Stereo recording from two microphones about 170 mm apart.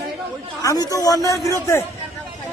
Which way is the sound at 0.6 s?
20° left (ahead or behind).